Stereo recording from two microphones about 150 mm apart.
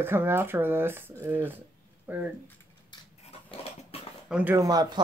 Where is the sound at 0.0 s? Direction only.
15° right (ahead or behind).